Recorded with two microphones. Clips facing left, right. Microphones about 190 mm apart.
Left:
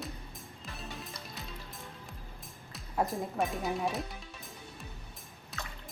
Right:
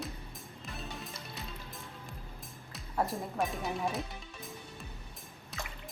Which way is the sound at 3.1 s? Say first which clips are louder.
Left 2 dB; centre (ahead or behind).